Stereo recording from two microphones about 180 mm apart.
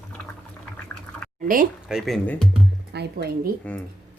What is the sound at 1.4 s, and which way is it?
Speech, 50° right (ahead or behind).